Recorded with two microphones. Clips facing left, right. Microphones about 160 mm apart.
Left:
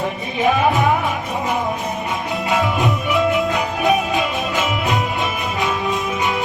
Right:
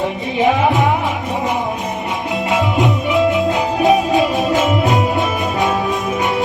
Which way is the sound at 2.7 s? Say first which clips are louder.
Right 3 dB; 20° right (ahead or behind).